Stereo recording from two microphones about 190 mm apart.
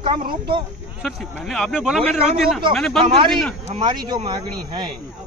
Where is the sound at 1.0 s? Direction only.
Centre (ahead or behind).